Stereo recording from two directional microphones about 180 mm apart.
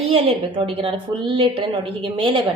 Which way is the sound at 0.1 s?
30° right (ahead or behind).